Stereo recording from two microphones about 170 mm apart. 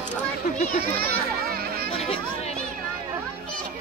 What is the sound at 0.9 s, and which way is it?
Children playing, 60° right (ahead or behind).